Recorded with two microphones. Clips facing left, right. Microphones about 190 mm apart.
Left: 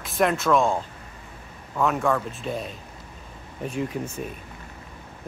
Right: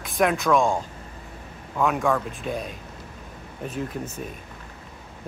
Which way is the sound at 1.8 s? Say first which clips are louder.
Even; centre (ahead or behind).